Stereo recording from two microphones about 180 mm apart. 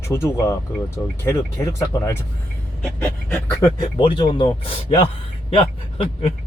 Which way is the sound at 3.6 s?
30° left (ahead or behind).